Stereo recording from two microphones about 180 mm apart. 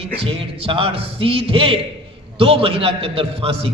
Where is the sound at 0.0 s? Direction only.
30° right (ahead or behind).